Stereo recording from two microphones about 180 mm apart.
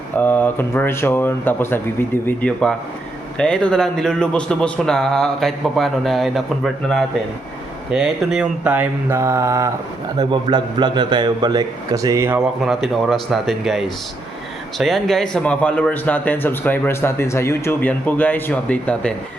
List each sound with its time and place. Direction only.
0.2 s a man's voice: 10° left (ahead or behind)
7.9 s mantra: 5° right (ahead or behind)
10.2 s a man's voice: 25° right (ahead or behind)
12.6 s a man's voice: centre (ahead or behind)